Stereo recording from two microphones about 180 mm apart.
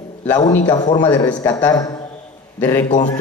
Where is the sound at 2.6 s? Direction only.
10° left (ahead or behind).